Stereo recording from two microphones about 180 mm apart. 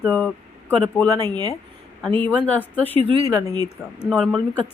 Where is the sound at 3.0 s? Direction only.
35° right (ahead or behind).